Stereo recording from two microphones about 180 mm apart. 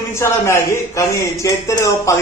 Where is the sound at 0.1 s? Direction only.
15° left (ahead or behind).